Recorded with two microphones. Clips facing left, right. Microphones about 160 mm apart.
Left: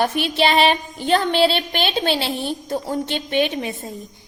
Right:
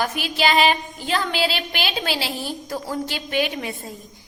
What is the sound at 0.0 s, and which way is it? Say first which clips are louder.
A woman's voice: left 4 dB; 30° left (ahead or behind).